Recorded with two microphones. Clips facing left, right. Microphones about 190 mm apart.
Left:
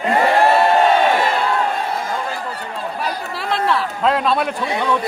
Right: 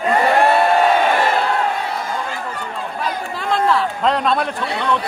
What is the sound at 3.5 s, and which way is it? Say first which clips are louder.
Speech: right 2 dB; 5° left (ahead or behind).